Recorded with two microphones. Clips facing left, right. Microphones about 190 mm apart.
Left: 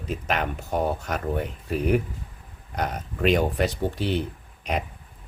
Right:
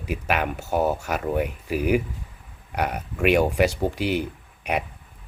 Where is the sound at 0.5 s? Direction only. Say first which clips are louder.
Right 3 dB; 75° right (ahead or behind).